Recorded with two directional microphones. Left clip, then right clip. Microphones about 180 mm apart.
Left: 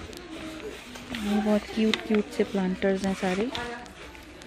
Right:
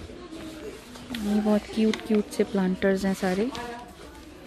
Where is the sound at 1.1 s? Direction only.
10° right (ahead or behind).